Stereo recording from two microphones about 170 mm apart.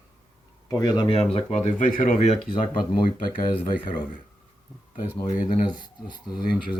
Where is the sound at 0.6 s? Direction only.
20° left (ahead or behind).